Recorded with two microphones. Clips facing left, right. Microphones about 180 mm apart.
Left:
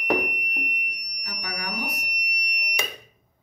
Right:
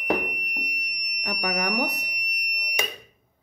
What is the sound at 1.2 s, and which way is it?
Speech, 60° right (ahead or behind).